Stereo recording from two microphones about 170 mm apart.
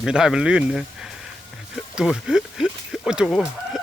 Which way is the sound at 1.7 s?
5° right (ahead or behind).